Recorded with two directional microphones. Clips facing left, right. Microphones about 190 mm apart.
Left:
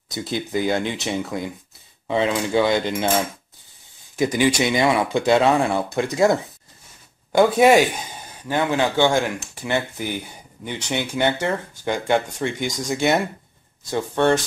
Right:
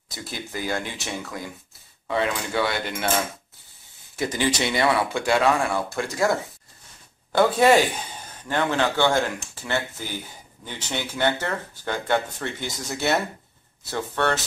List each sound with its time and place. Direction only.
0.1 s speech: 20° left (ahead or behind)
4.2 s speech: 15° left (ahead or behind)
7.3 s speech: 10° left (ahead or behind)